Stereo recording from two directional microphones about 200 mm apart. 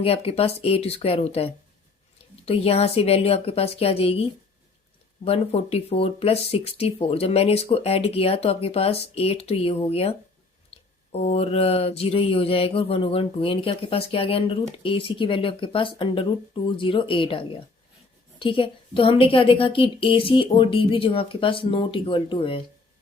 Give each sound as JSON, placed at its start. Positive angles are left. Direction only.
{"t": 0.0, "sound": "mantra", "side_deg": 30}